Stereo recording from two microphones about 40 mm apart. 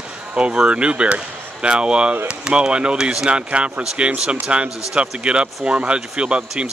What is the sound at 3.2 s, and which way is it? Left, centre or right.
Speech, right.